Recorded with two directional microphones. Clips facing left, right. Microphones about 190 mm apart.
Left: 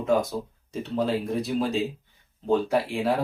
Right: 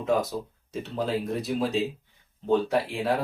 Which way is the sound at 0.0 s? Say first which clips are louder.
Left 2 dB; centre (ahead or behind).